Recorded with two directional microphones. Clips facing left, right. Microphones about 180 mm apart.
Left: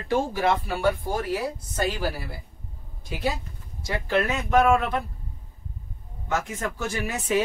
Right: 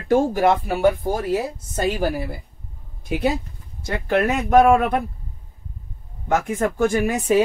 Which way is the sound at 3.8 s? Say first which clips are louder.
Right 4 dB; 55° right (ahead or behind).